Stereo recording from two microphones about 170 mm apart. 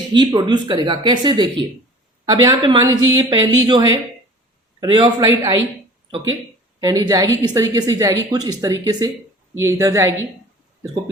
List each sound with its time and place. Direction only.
0.1 s a woman's voice: 25° right (ahead or behind)
6.7 s a woman's voice: 20° right (ahead or behind)